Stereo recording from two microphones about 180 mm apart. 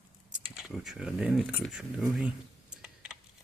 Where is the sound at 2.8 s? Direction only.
5° right (ahead or behind).